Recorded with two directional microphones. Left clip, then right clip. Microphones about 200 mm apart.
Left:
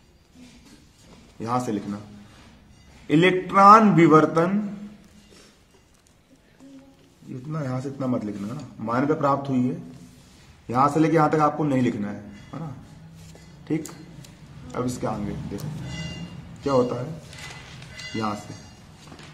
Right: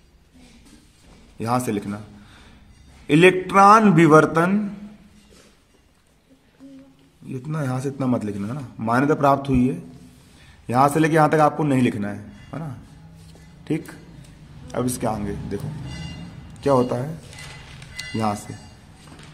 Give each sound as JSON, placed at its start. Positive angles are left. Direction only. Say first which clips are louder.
{"t": 1.4, "sound": "a man's voice", "louder": "right 3 dB", "side_deg": -50}
{"t": 3.1, "sound": "a man's voice", "louder": "right 4 dB", "side_deg": -55}
{"t": 7.5, "sound": "a man's voice", "louder": "right 4 dB", "side_deg": -55}
{"t": 14.7, "sound": "a man's voice", "louder": "right 3 dB", "side_deg": -50}
{"t": 16.6, "sound": "a man's voice", "louder": "right 3 dB", "side_deg": -55}
{"t": 17.9, "sound": "music", "louder": "right 4 dB", "side_deg": -55}